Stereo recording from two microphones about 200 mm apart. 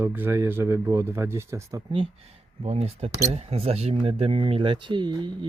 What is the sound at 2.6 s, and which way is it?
Speech, 30° right (ahead or behind).